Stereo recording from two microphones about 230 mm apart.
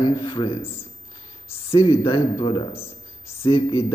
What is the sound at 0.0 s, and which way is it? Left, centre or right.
Speech, left.